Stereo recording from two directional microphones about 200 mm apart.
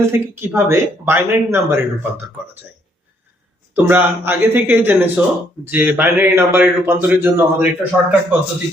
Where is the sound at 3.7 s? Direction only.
10° right (ahead or behind).